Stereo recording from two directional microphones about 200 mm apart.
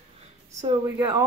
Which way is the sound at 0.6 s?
20° right (ahead or behind).